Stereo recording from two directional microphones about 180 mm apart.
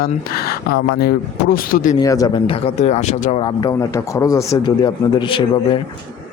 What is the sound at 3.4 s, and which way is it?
A man's voice, 25° left (ahead or behind).